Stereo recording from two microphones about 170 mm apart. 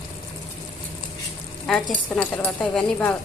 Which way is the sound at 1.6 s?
5° left (ahead or behind).